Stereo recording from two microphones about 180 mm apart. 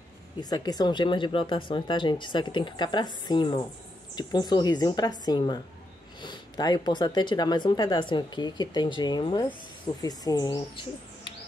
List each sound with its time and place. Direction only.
0.4 s speech: 20° left (ahead or behind)